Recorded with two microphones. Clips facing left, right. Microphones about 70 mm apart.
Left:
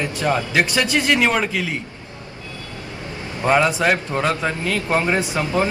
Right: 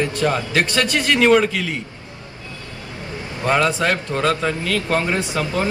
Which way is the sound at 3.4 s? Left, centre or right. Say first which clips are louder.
Left 1 dB; centre.